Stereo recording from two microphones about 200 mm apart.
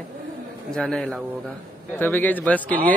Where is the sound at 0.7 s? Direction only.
5° left (ahead or behind).